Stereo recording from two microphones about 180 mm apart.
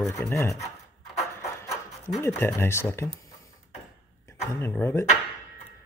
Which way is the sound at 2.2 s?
15° left (ahead or behind).